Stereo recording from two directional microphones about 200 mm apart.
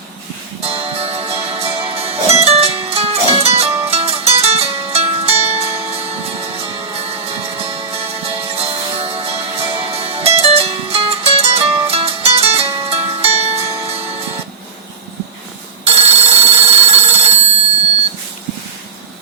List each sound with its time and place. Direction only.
0.6 s music: 30° right (ahead or behind)
15.9 s telephone: 30° right (ahead or behind)